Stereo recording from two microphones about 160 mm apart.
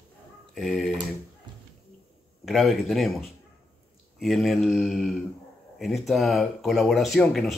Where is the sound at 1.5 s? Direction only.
30° right (ahead or behind).